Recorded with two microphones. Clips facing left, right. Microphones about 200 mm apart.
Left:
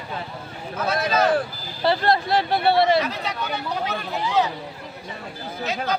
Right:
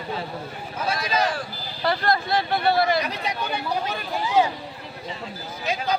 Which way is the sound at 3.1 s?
15° right (ahead or behind).